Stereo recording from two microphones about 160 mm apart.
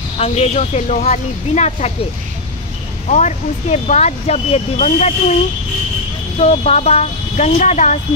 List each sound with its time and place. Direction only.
0.2 s speech: 45° left (ahead or behind)
3.1 s speech: 50° left (ahead or behind)